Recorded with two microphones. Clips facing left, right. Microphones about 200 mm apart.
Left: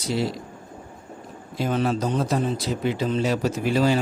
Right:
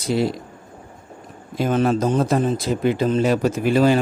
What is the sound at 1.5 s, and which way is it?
A man's voice, 50° right (ahead or behind).